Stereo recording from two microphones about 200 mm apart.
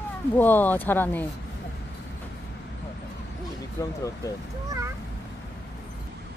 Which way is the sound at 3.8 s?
15° left (ahead or behind).